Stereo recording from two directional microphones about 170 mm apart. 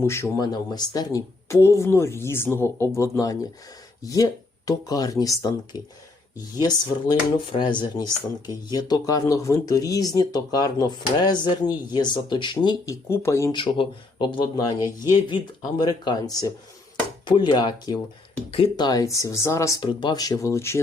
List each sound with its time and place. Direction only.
0.0 s speech: 15° left (ahead or behind)
13.5 s speech: 30° left (ahead or behind)
18.9 s speech: 20° left (ahead or behind)